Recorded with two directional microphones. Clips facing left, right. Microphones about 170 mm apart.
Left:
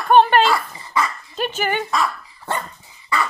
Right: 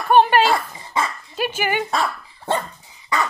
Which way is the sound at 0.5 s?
25° right (ahead or behind).